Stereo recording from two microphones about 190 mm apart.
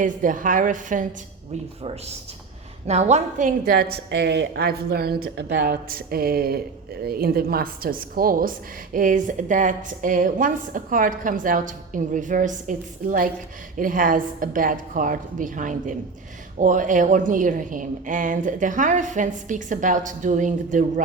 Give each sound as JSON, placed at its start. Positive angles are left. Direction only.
{"t": 0.0, "sound": "speech", "side_deg": -45}
{"t": 1.8, "sound": "speech", "side_deg": -30}